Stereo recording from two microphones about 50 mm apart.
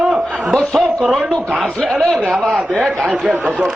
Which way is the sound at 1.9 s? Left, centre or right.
Centre.